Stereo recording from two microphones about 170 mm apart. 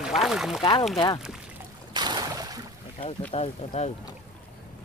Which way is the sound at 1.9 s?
25° right (ahead or behind).